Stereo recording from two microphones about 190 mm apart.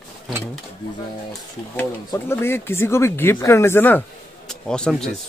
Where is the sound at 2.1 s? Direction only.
15° left (ahead or behind).